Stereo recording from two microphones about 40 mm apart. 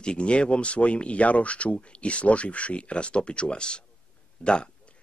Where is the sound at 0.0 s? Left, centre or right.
Left.